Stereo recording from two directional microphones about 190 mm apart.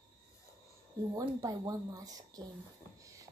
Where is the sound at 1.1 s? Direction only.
20° right (ahead or behind).